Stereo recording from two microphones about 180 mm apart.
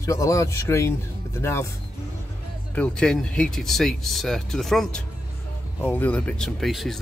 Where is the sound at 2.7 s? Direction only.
5° left (ahead or behind).